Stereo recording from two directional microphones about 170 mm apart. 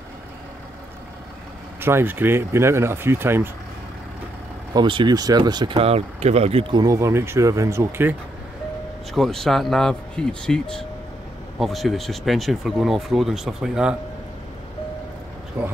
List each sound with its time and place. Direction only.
1.8 s speech: 15° right (ahead or behind)
4.7 s speech: 25° right (ahead or behind)
6.8 s speech: 20° right (ahead or behind)
9.1 s speech: centre (ahead or behind)
15.6 s speech: 10° right (ahead or behind)